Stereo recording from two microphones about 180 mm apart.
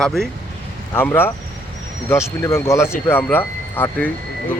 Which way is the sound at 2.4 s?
15° left (ahead or behind).